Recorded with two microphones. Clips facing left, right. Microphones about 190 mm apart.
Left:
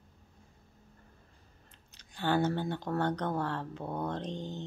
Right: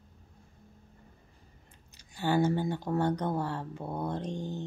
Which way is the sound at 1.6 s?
10° right (ahead or behind).